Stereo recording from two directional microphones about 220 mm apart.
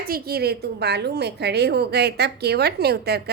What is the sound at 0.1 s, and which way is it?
A woman's voice, 45° right (ahead or behind).